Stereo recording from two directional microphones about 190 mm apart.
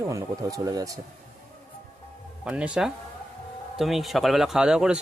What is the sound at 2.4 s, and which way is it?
Speech, 5° right (ahead or behind).